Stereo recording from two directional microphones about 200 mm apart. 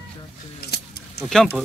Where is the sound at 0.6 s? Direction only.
55° left (ahead or behind).